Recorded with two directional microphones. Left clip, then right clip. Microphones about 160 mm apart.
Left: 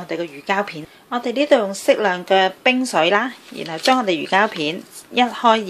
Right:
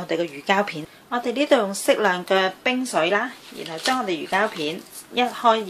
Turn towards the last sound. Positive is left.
turn(degrees=35)  # may be behind; listen again after turning